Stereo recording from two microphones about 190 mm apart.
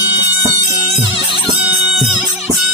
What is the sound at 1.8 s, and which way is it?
Music, 5° right (ahead or behind).